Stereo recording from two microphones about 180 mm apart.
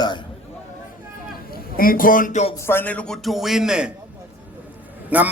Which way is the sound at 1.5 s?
55° left (ahead or behind).